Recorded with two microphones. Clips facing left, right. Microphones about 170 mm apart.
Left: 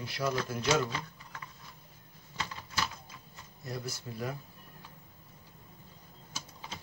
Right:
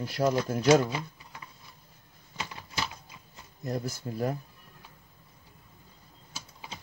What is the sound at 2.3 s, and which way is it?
Typewriter, 15° right (ahead or behind).